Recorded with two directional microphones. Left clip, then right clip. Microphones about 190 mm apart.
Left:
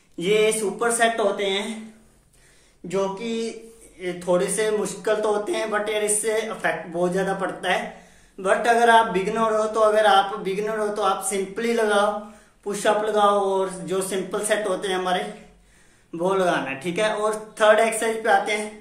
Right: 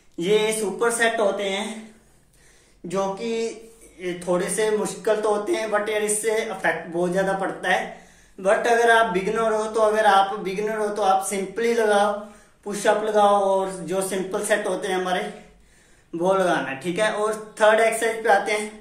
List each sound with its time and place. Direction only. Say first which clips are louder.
0.2 s speech: left 1 dB; 20° left (ahead or behind)
2.9 s speech: even; 15° left (ahead or behind)